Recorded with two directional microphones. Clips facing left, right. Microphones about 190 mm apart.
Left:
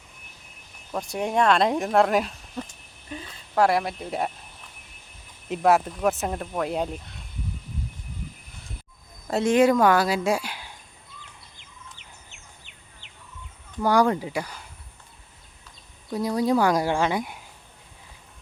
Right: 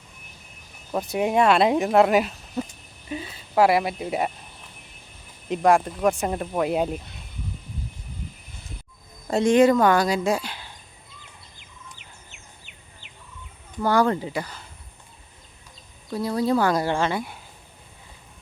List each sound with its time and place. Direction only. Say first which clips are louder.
0.9 s speech: right 3 dB; 5° right (ahead or behind)
5.5 s speech: right 1 dB; 5° left (ahead or behind)
9.2 s speech: right 2 dB; 5° left (ahead or behind)
13.8 s speech: even; 10° left (ahead or behind)
16.0 s speech: even; 15° left (ahead or behind)